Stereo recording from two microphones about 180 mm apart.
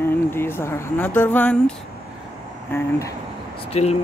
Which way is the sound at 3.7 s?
35° left (ahead or behind).